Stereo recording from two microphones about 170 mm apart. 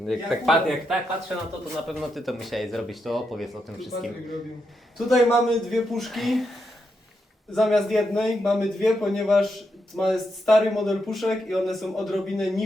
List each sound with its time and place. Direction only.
0.0 s speech: centre (ahead or behind)
7.5 s speech: centre (ahead or behind)